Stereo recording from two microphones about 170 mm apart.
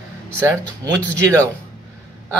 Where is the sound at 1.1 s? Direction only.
20° right (ahead or behind).